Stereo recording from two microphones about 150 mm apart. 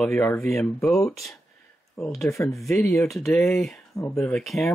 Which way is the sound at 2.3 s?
20° left (ahead or behind).